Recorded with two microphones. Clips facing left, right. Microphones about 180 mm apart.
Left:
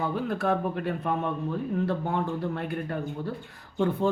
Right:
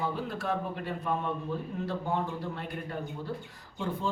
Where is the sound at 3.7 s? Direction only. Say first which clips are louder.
Left 9 dB; 60° left (ahead or behind).